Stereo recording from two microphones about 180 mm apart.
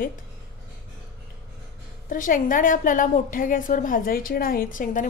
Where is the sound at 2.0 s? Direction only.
50° left (ahead or behind).